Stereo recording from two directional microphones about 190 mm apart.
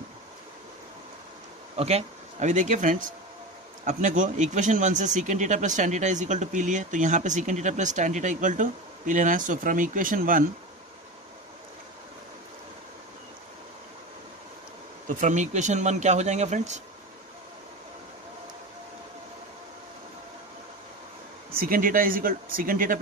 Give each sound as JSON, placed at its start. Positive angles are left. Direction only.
{"t": 1.8, "sound": "speech", "side_deg": -35}
{"t": 15.0, "sound": "speech", "side_deg": -40}
{"t": 21.5, "sound": "speech", "side_deg": -50}